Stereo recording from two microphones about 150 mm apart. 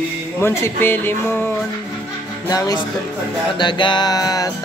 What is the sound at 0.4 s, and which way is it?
Speech, 15° left (ahead or behind).